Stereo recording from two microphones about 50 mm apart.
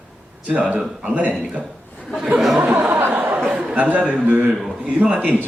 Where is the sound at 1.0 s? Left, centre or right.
Right.